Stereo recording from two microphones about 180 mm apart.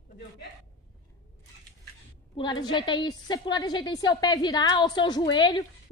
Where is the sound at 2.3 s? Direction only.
25° left (ahead or behind).